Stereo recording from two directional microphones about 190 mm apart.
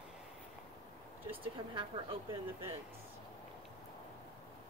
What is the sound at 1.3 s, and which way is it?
Speech, 25° right (ahead or behind).